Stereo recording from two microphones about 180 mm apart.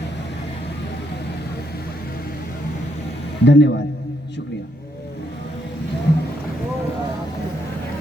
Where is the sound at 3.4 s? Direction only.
75° left (ahead or behind).